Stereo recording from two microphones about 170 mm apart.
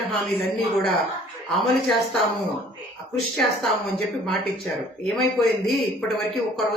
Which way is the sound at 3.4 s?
Centre (ahead or behind).